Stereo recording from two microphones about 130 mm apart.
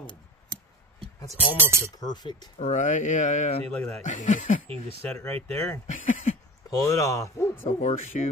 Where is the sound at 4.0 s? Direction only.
80° left.